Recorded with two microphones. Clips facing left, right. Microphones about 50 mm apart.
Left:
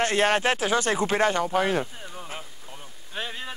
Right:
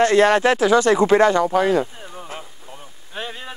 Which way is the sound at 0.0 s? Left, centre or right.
Right.